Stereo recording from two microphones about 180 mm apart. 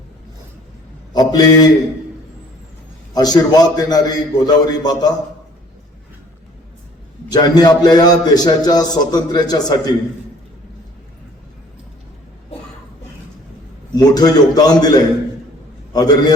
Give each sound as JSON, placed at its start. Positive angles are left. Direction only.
{"t": 1.1, "sound": "mantra", "side_deg": 20}
{"t": 3.2, "sound": "a man's voice", "side_deg": 20}
{"t": 7.3, "sound": "a man's voice", "side_deg": 20}
{"t": 13.9, "sound": "a man's voice", "side_deg": 20}